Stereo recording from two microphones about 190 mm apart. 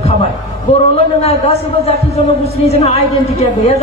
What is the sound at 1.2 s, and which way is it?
A man's voice, 35° left (ahead or behind).